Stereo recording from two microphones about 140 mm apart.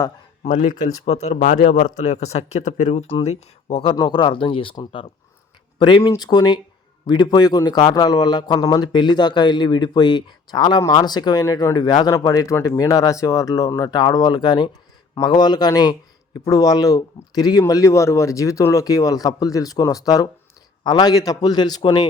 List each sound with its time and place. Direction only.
0.4 s speech: 65° left (ahead or behind)
1.0 s speech: 50° left (ahead or behind)
1.5 s a man's voice: 80° left
2.0 s speech: 50° left (ahead or behind)
3.9 s a man's voice: 30° left (ahead or behind)